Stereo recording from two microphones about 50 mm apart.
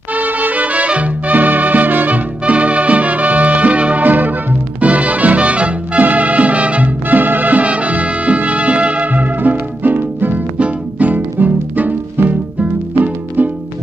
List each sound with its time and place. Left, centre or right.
0.1 s music: right